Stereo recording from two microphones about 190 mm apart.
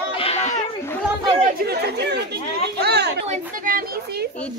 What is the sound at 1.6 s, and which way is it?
Speech, 55° right (ahead or behind).